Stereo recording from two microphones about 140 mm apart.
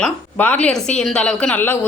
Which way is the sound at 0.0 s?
10° left (ahead or behind).